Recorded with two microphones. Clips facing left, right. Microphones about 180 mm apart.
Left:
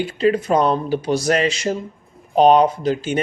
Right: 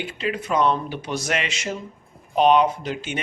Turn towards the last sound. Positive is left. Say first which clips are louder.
# left 9 dB
turn(degrees=35)  # may be behind; listen again after turning